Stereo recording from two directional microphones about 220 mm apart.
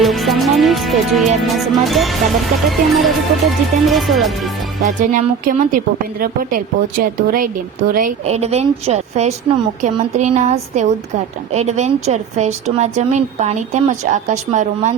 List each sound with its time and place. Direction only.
0.0 s music: centre (ahead or behind)
4.8 s a woman's voice: 35° right (ahead or behind)